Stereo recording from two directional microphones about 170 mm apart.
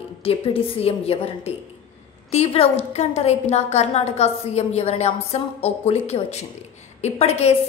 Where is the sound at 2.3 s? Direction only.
40° left (ahead or behind).